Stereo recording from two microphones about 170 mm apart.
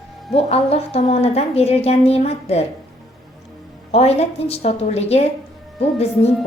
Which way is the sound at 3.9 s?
40° left (ahead or behind).